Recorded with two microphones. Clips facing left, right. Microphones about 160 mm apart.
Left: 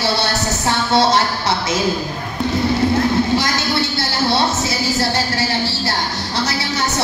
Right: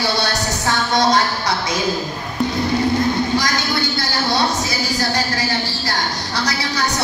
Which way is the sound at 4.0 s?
25° left (ahead or behind).